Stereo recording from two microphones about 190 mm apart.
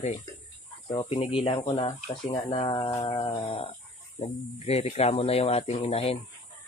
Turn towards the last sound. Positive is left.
turn(degrees=35)  # may be behind; listen again after turning